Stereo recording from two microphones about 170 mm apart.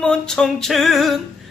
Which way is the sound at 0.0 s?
5° left (ahead or behind).